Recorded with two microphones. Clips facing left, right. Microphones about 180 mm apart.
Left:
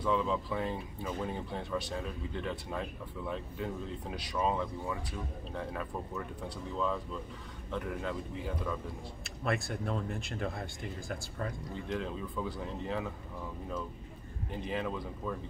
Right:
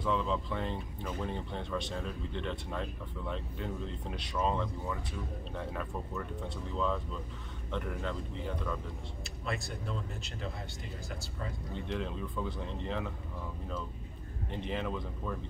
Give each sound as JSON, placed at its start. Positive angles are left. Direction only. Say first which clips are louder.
{"t": 0.0, "sound": "speech", "louder": "left 1 dB", "side_deg": 5}
{"t": 9.4, "sound": "speech", "louder": "left 5 dB", "side_deg": 60}
{"t": 11.7, "sound": "speech", "louder": "right 2 dB", "side_deg": 0}
{"t": 14.5, "sound": "speech", "louder": "even", "side_deg": 0}